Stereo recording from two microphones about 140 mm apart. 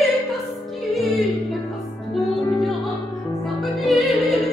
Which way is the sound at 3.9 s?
Centre (ahead or behind).